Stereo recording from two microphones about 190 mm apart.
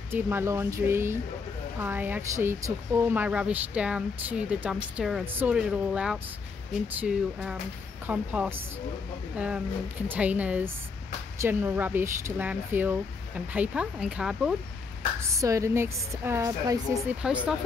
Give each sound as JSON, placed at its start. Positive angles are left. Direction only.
{"t": 0.1, "sound": "speech", "side_deg": -10}
{"t": 10.0, "sound": "speech", "side_deg": -10}
{"t": 15.1, "sound": "speech", "side_deg": -15}
{"t": 17.2, "sound": "speech", "side_deg": -5}